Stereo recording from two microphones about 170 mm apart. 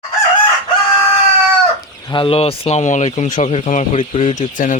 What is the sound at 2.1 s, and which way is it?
Speech, 35° left (ahead or behind).